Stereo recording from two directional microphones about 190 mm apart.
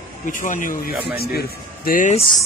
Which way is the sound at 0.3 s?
45° left (ahead or behind).